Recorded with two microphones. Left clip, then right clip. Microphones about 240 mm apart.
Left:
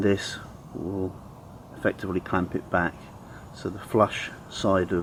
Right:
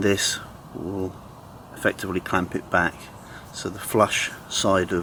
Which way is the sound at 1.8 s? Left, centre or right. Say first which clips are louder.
Right 3 dB; centre.